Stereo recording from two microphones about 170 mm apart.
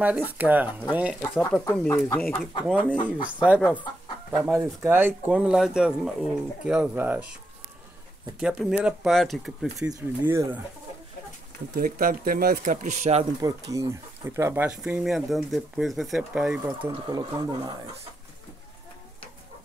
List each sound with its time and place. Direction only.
0.0 s speech: 10° right (ahead or behind)
1.4 s speech: 15° left (ahead or behind)
4.5 s speech: 10° right (ahead or behind)
8.4 s speech: 5° right (ahead or behind)
9.8 s speech: 20° right (ahead or behind)
11.7 s speech: 55° right (ahead or behind)
13.4 s speech: 20° right (ahead or behind)
14.8 s speech: centre (ahead or behind)
16.6 s speech: 20° right (ahead or behind)